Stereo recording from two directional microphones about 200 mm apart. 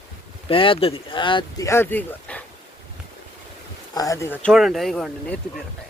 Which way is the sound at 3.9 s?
15° left (ahead or behind).